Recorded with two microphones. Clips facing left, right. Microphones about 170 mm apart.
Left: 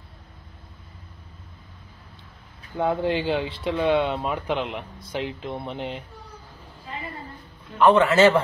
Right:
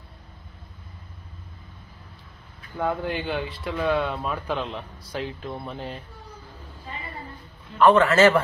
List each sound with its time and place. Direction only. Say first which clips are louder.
2.8 s speech: left 4 dB; 25° left (ahead or behind)
7.8 s a man's voice: even; 15° left (ahead or behind)